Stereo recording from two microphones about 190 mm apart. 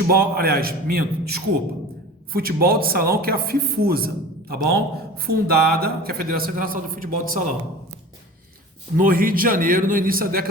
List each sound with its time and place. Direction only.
0.1 s speech: 50° right (ahead or behind)
9.0 s speech: 50° right (ahead or behind)